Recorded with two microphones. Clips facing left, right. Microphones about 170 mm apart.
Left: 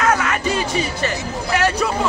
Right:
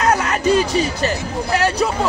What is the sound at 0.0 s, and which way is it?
Music, 35° right (ahead or behind).